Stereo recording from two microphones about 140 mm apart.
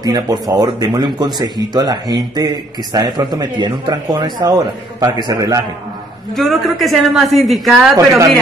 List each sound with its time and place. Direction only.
0.0 s speech: 25° right (ahead or behind)
6.3 s a woman's voice: centre (ahead or behind)